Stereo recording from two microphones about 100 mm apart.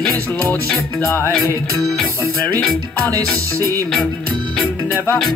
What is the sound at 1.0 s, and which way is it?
Music, 25° left (ahead or behind).